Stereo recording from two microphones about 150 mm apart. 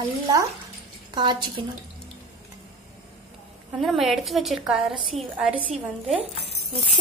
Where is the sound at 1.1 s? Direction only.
30° right (ahead or behind).